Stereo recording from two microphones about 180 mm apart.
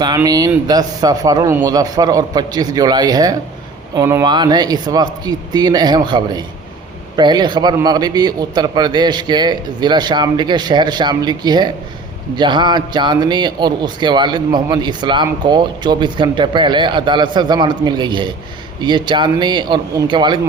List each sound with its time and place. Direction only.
0.0 s speech: 20° right (ahead or behind)